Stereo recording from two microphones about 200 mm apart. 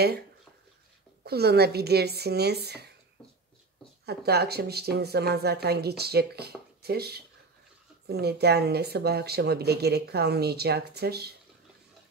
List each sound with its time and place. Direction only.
1.2 s a woman's voice: 55° right (ahead or behind)
4.0 s a woman's voice: 55° right (ahead or behind)